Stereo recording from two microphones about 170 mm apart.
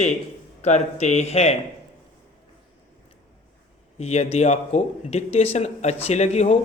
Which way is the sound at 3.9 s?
40° left (ahead or behind).